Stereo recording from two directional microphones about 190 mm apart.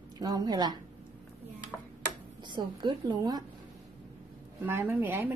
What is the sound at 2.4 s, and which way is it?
Speech, 25° right (ahead or behind).